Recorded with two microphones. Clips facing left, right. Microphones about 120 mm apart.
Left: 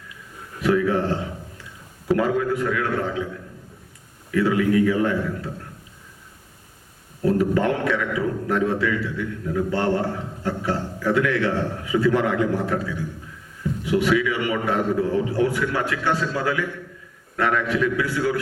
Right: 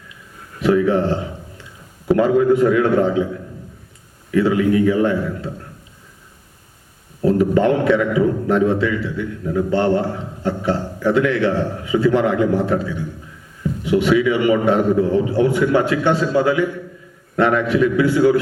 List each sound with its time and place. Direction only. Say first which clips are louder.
0.6 s a man's voice: right 4 dB; 25° right (ahead or behind)
4.3 s a man's voice: right 4 dB; 25° right (ahead or behind)
7.2 s a man's voice: right 5 dB; 25° right (ahead or behind)